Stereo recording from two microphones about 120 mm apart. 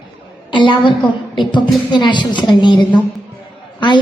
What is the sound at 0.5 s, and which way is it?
A woman's voice, 40° left (ahead or behind).